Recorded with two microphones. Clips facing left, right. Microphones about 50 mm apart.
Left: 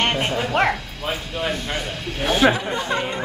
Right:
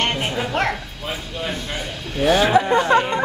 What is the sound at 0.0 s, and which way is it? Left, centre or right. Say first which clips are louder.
Bow-wow: left 1 dB; centre.